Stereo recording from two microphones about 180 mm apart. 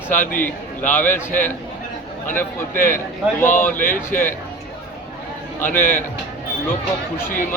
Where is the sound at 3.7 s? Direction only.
50° left (ahead or behind).